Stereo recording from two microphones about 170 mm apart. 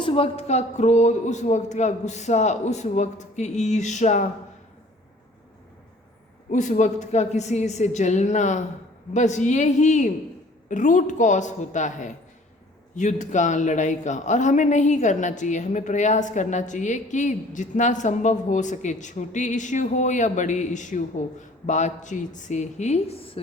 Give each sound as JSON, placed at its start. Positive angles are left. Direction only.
{"t": 0.0, "sound": "a man's voice", "side_deg": 35}
{"t": 6.5, "sound": "a man's voice", "side_deg": 45}